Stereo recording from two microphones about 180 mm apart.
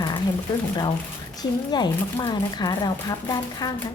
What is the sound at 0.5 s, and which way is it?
Speech, 25° left (ahead or behind).